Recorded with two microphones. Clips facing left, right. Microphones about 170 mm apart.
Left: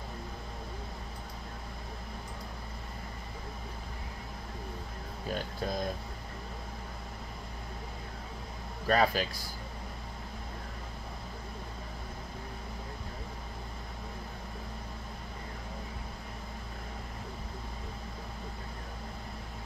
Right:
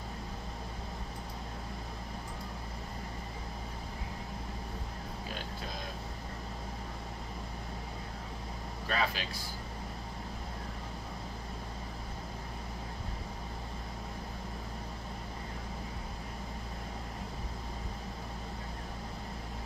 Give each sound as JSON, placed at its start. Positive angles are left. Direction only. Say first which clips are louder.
{"t": 8.8, "sound": "speech", "louder": "left 7 dB", "side_deg": 40}